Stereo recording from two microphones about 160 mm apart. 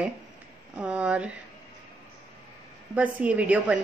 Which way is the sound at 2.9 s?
10° right (ahead or behind).